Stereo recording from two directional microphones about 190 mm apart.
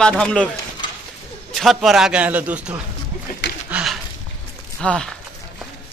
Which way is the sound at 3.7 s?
Centre (ahead or behind).